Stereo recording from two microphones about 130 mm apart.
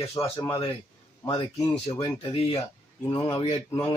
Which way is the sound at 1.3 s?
45° left (ahead or behind).